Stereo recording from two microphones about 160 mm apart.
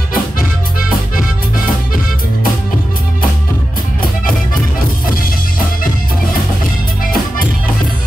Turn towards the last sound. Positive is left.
turn(degrees=60)  # may be behind; listen again after turning